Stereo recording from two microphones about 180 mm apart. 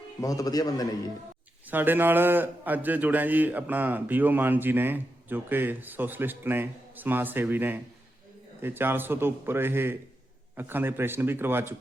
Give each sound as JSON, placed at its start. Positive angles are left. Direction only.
{"t": 0.2, "sound": "a man's voice", "side_deg": 20}
{"t": 1.7, "sound": "a man's voice", "side_deg": -10}